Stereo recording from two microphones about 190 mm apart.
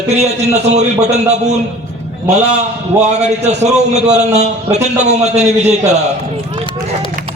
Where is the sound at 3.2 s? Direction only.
35° right (ahead or behind).